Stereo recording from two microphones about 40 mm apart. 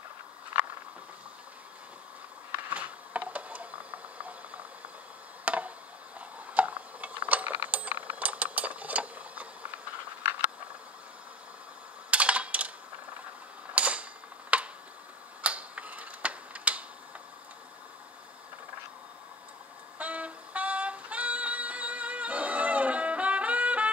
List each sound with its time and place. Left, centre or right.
2.7 s a sound: right
5.4 s a sound: right
7.6 s coin: right
8.3 s mechanisms: right
12.1 s typing: right
13.7 s a sound: right
14.5 s tick: right
15.4 s tick-tock: right
20.0 s music: right